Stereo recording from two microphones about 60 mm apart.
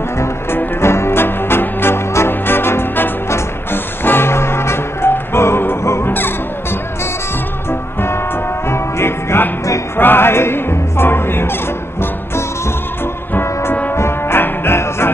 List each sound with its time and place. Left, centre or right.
0.7 s music: left
8.6 s music: left
13.3 s brass instrument: left
13.9 s music: left